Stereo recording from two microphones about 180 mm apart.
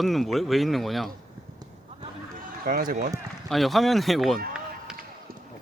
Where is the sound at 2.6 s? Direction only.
50° right (ahead or behind).